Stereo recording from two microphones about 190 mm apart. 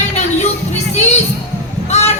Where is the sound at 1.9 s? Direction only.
35° left (ahead or behind).